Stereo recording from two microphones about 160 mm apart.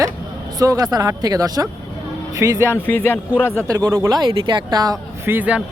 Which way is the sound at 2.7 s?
10° left (ahead or behind).